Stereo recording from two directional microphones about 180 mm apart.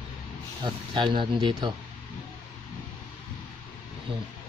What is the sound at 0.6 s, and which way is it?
Speech, 25° right (ahead or behind).